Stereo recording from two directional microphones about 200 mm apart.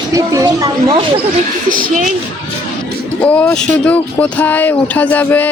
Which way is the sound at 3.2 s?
5° left (ahead or behind).